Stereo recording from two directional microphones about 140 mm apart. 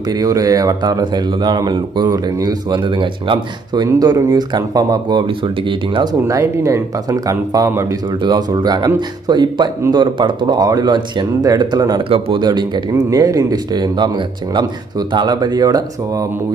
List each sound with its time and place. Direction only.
0.1 s speech: 25° right (ahead or behind)
6.2 s speech: 20° right (ahead or behind)